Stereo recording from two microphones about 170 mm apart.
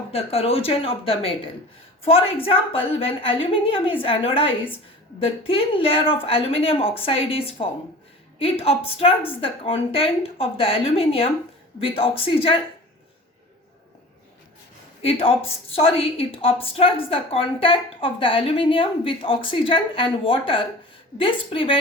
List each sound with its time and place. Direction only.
0.1 s a woman's voice: 35° left (ahead or behind)
15.0 s a woman's voice: 35° left (ahead or behind)